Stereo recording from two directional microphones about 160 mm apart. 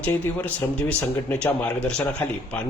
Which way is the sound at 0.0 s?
10° left (ahead or behind).